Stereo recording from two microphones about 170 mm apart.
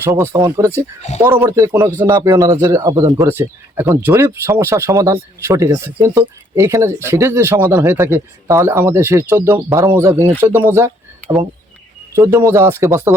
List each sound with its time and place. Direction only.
0.0 s speech: 15° right (ahead or behind)